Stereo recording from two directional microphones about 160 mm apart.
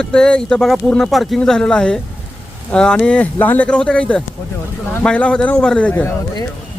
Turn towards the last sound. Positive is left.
turn(degrees=10)  # may be behind; listen again after turning